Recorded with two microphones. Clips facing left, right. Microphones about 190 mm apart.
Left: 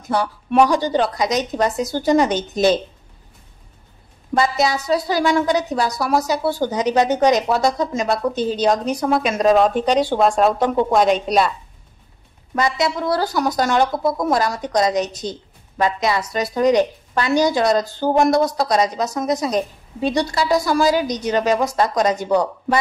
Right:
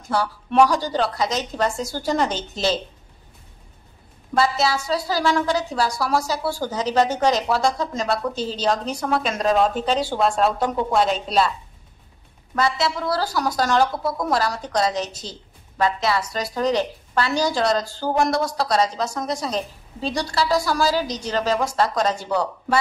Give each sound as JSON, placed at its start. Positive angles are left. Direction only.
{"t": 0.1, "sound": "a woman's voice", "side_deg": 15}
{"t": 4.3, "sound": "a woman's voice", "side_deg": 20}
{"t": 12.5, "sound": "a woman's voice", "side_deg": 15}